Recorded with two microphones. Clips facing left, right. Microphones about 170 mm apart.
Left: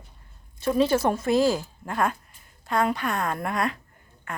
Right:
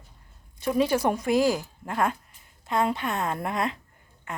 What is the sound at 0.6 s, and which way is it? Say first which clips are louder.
A woman's voice: left 2 dB; 15° right (ahead or behind).